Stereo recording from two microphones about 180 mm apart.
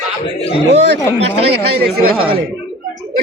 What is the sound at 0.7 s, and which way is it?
Speech, 70° right (ahead or behind).